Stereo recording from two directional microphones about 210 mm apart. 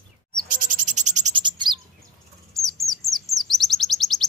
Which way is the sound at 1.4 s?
20° right (ahead or behind).